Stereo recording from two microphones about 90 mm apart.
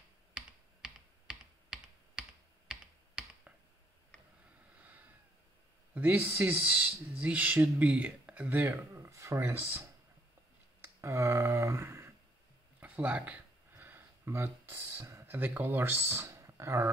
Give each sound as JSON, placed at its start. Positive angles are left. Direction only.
{"t": 0.8, "sound": "computer keyboard", "side_deg": -10}
{"t": 4.7, "sound": "a sound", "side_deg": -20}
{"t": 5.9, "sound": "speech", "side_deg": -20}
{"t": 10.8, "sound": "speech", "side_deg": -30}
{"t": 12.8, "sound": "a sound", "side_deg": -15}
{"t": 15.2, "sound": "speech", "side_deg": -20}